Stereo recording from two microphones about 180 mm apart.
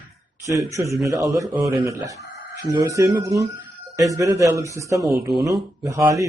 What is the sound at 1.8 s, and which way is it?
Speech, 20° right (ahead or behind).